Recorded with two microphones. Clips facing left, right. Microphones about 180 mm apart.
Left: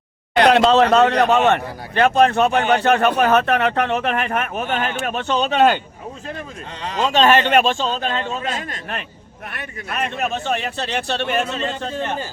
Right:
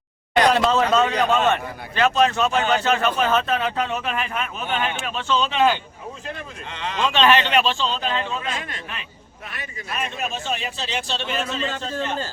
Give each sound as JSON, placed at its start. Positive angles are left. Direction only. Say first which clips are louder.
{"t": 0.4, "sound": "speech", "louder": "left 6 dB", "side_deg": 70}
{"t": 2.0, "sound": "speech", "louder": "left 4 dB", "side_deg": 55}
{"t": 6.3, "sound": "speech", "louder": "left 3 dB", "side_deg": 35}
{"t": 9.5, "sound": "speech", "louder": "left 3 dB", "side_deg": 60}